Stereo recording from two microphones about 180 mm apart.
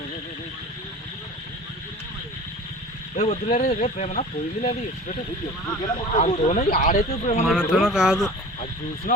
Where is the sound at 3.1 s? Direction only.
40° left (ahead or behind).